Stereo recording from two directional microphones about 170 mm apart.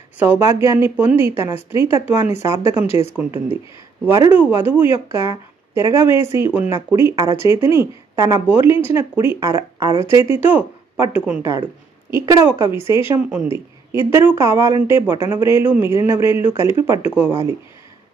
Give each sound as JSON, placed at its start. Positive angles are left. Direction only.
{"t": 0.2, "sound": "a woman's voice", "side_deg": -15}
{"t": 4.0, "sound": "a woman's voice", "side_deg": -15}